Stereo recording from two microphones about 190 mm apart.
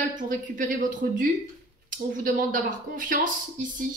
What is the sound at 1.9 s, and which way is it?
Speech, 45° right (ahead or behind).